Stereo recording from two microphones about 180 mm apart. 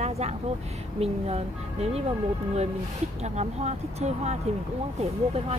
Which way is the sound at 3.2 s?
40° right (ahead or behind).